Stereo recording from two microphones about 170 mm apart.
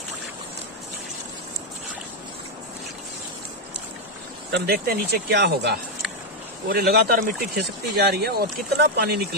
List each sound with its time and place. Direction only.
4.5 s speech: 70° right (ahead or behind)
6.7 s speech: 65° right (ahead or behind)